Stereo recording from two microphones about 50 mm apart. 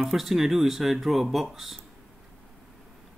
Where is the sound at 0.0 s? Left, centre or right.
Centre.